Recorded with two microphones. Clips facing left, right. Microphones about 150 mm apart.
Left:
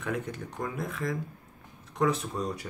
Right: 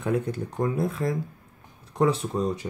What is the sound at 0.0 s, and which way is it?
Speech, 30° right (ahead or behind).